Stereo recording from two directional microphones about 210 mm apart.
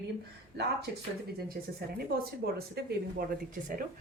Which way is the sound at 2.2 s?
45° right (ahead or behind).